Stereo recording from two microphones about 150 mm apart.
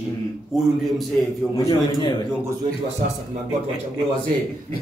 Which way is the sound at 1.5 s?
25° left (ahead or behind).